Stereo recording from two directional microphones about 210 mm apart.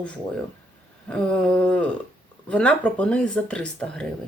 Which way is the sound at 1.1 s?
5° left (ahead or behind).